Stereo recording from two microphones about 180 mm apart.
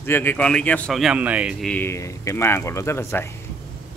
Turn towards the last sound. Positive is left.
turn(degrees=15)  # may be behind; listen again after turning